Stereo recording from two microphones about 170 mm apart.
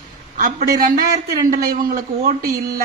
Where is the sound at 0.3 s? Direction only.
55° right (ahead or behind).